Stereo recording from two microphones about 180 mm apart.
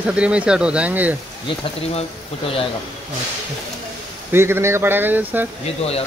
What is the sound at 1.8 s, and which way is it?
Speech, 35° left (ahead or behind).